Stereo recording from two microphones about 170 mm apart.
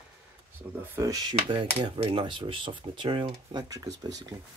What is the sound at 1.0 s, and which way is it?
Speech, 20° right (ahead or behind).